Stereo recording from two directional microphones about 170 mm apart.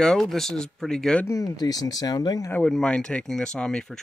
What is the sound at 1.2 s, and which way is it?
Speech, 20° left (ahead or behind).